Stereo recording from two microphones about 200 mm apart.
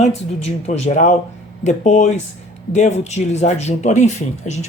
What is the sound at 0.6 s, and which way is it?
Speech, 35° left (ahead or behind).